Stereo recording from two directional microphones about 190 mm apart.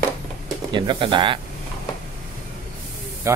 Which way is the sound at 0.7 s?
25° right (ahead or behind).